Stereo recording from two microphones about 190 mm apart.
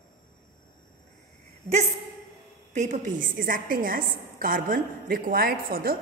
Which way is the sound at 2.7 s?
40° right (ahead or behind).